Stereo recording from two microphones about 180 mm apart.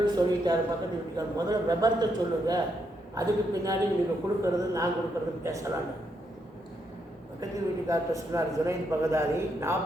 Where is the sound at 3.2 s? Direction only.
20° right (ahead or behind).